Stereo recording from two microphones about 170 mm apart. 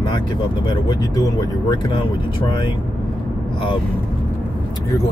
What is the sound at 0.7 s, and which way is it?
Speech, 25° left (ahead or behind).